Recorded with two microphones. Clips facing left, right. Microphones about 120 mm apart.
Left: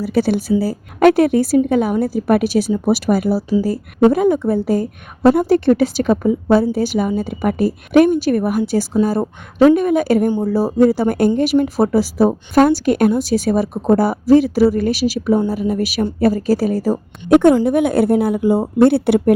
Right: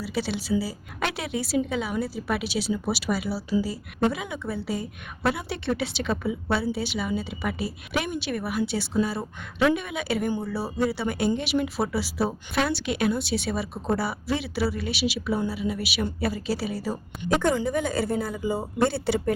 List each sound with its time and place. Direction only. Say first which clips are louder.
0.0 s a woman's voice: left 12 dB; 50° left (ahead or behind)
17.2 s a woman's voice: left 13 dB; 60° left (ahead or behind)